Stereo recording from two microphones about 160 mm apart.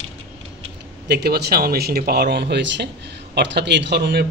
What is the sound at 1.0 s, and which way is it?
A man's voice, 85° right.